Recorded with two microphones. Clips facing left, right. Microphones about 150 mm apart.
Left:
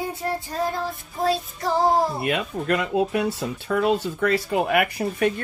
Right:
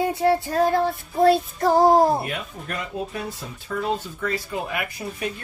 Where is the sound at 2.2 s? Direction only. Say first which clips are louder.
Left 7 dB; 85° left.